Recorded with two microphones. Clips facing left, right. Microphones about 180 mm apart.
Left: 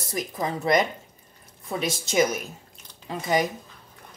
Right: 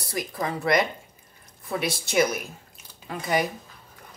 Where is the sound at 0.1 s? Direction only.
20° left (ahead or behind).